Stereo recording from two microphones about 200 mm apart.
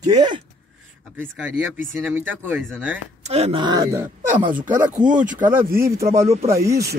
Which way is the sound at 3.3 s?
30° right (ahead or behind).